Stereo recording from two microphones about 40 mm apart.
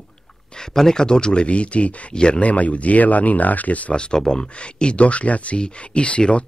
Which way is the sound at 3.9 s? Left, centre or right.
Left.